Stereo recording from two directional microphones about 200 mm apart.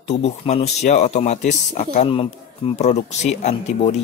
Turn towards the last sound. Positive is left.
turn(degrees=35)  # may be behind; listen again after turning